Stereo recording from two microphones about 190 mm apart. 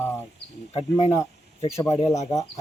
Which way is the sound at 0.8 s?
35° left (ahead or behind).